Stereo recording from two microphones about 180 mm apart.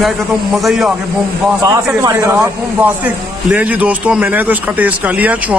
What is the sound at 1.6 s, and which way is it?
A man's voice, 20° right (ahead or behind).